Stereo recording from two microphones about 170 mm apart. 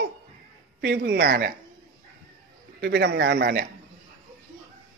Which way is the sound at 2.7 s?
90° right.